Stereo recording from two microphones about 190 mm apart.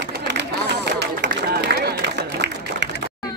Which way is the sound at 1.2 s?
60° right (ahead or behind).